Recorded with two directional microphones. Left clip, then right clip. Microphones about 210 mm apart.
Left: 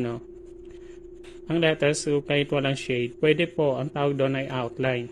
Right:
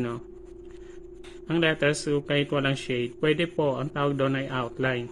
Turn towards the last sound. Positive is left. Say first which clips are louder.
# left 1 dB
turn(degrees=20)  # may be behind; listen again after turning